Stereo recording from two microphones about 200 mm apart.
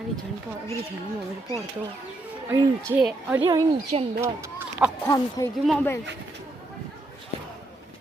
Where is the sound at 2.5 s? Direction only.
15° right (ahead or behind).